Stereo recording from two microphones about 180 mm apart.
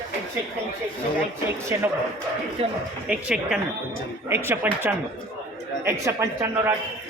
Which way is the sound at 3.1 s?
5° right (ahead or behind).